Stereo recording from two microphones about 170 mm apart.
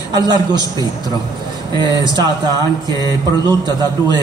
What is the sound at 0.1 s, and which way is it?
Speech, 25° right (ahead or behind).